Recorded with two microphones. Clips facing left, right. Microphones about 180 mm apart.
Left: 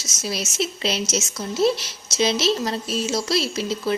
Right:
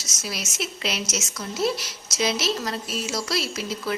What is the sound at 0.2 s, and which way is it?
Speech, 25° left (ahead or behind).